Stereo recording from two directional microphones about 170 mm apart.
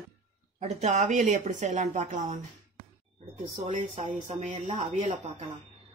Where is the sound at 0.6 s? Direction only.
40° right (ahead or behind).